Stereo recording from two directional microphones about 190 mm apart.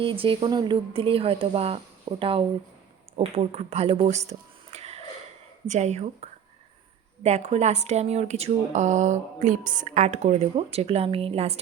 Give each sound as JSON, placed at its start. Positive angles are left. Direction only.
{"t": 0.0, "sound": "speech", "side_deg": -25}
{"t": 4.3, "sound": "whispering", "side_deg": -35}
{"t": 5.6, "sound": "speech", "side_deg": -40}